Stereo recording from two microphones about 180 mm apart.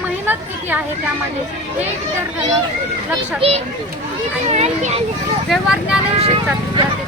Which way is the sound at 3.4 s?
35° right (ahead or behind).